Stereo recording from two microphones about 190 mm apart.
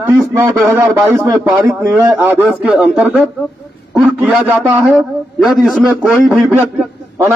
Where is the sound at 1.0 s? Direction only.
15° right (ahead or behind).